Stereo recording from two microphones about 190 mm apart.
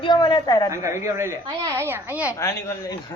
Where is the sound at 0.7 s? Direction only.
15° right (ahead or behind).